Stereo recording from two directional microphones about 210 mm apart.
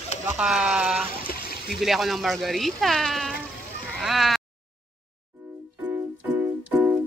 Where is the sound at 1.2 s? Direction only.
45° left (ahead or behind).